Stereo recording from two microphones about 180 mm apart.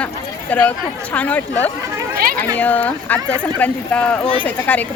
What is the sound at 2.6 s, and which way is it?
A woman's voice, 10° left (ahead or behind).